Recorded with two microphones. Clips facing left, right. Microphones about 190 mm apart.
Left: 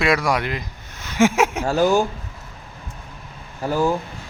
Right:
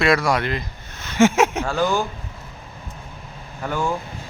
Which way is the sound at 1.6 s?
40° left (ahead or behind).